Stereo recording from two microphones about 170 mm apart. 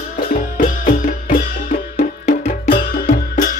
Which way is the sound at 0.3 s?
55° left (ahead or behind).